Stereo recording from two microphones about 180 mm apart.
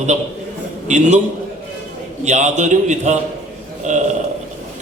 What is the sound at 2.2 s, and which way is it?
A man's voice, 40° right (ahead or behind).